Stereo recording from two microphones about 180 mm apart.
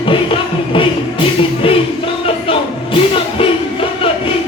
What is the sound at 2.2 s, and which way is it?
Music, 30° left (ahead or behind).